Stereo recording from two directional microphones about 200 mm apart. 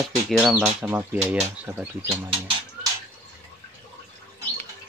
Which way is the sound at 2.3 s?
25° right (ahead or behind).